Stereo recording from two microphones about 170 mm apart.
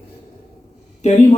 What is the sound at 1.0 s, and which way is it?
Speech, 40° left (ahead or behind).